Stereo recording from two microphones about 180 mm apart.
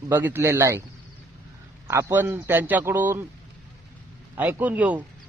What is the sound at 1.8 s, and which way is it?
A man's voice, 15° right (ahead or behind).